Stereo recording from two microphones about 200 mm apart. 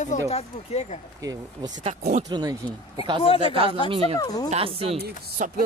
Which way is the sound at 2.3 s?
20° right (ahead or behind).